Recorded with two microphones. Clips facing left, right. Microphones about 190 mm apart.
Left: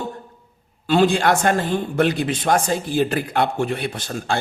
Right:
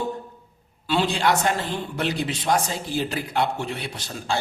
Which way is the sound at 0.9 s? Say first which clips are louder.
Left 5 dB; 50° left (ahead or behind).